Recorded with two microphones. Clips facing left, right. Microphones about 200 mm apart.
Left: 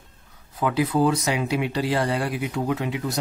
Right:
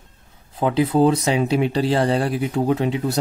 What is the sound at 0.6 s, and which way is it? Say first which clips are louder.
A man's voice: right 4 dB; 25° right (ahead or behind).